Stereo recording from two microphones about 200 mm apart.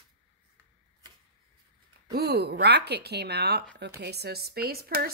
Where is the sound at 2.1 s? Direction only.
55° right (ahead or behind).